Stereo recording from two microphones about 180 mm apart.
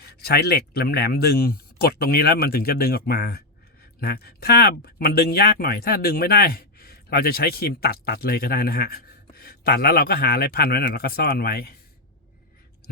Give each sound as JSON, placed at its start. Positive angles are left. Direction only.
{"t": 0.0, "sound": "speech", "side_deg": 60}